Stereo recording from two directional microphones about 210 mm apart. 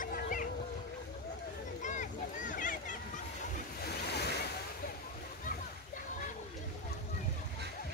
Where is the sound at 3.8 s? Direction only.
50° left (ahead or behind).